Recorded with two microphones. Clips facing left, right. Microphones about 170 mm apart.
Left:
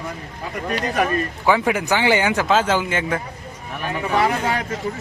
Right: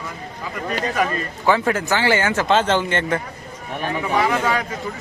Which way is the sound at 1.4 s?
10° left (ahead or behind).